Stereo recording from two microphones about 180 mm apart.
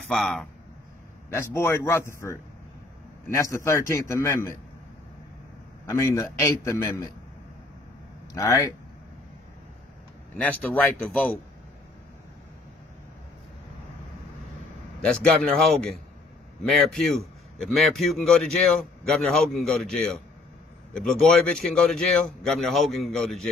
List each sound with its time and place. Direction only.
0.1 s a man's voice: centre (ahead or behind)
1.3 s a man's voice: 15° left (ahead or behind)
3.3 s a man's voice: 15° left (ahead or behind)
5.9 s a man's voice: 15° left (ahead or behind)
8.3 s speech: 20° left (ahead or behind)
10.3 s a man's voice: 10° left (ahead or behind)
15.0 s a man's voice: 5° left (ahead or behind)